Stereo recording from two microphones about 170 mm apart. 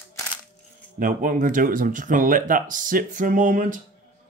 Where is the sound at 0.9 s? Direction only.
50° right (ahead or behind).